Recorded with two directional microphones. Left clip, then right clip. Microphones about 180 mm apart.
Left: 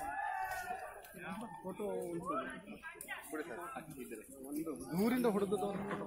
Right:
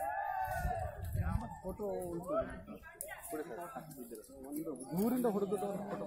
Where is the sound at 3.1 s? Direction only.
20° right (ahead or behind).